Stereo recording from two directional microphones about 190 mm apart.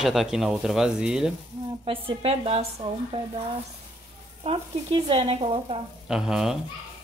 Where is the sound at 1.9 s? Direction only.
30° right (ahead or behind).